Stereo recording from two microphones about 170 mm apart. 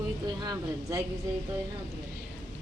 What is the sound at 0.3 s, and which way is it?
Speech, 20° right (ahead or behind).